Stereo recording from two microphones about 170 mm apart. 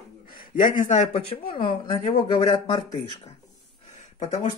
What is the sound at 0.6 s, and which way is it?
Speech, 50° left (ahead or behind).